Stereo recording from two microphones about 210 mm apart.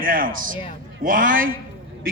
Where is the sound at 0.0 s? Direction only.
40° right (ahead or behind).